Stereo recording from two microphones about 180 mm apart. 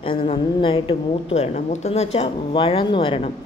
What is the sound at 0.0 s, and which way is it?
A woman's voice, 30° left (ahead or behind).